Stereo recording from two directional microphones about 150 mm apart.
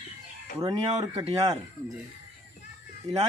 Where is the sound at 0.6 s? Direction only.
25° right (ahead or behind).